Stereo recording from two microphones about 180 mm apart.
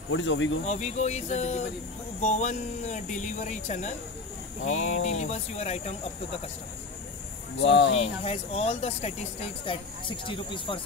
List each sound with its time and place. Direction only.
0.1 s speech: 90° left
0.7 s speech: 40° left (ahead or behind)
7.6 s speech: 85° left
7.9 s speech: 35° left (ahead or behind)